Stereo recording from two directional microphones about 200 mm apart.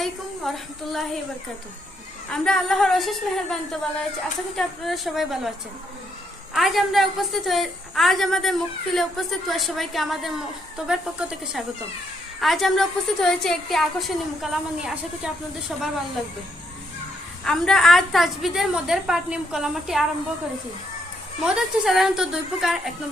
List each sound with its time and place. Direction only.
0.0 s a woman's voice: centre (ahead or behind)
2.3 s a woman's voice: 5° left (ahead or behind)
6.5 s a woman's voice: centre (ahead or behind)
17.4 s a woman's voice: centre (ahead or behind)
21.4 s a woman's voice: centre (ahead or behind)